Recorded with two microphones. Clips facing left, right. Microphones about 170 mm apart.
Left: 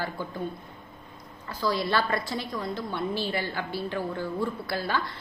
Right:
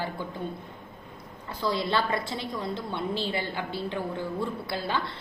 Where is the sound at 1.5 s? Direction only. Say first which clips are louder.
Left 1 dB; 25° right (ahead or behind).